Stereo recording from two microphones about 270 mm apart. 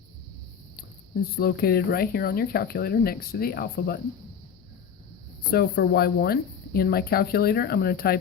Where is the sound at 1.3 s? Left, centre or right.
Left.